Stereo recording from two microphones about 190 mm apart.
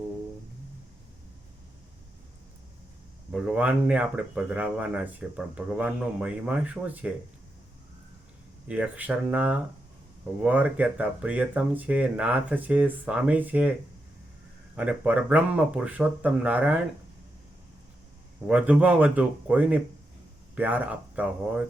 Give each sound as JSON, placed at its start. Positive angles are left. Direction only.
{"t": 3.3, "sound": "speech", "side_deg": -5}
{"t": 8.6, "sound": "speech", "side_deg": -5}
{"t": 14.8, "sound": "speech", "side_deg": -5}
{"t": 18.4, "sound": "speech", "side_deg": -5}